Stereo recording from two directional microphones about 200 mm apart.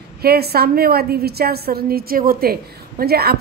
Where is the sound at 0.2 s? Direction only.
50° right (ahead or behind).